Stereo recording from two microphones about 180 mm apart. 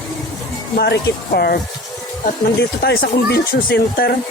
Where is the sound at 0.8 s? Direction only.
65° left (ahead or behind).